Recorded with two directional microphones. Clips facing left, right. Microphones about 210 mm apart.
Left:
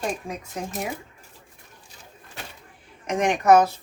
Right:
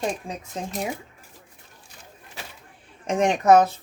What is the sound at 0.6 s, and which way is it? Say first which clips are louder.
Speech: even; 25° right (ahead or behind).